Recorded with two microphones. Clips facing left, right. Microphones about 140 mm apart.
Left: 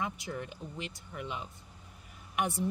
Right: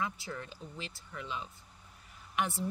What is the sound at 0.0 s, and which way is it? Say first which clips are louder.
Speech: left 1 dB; 15° left (ahead or behind).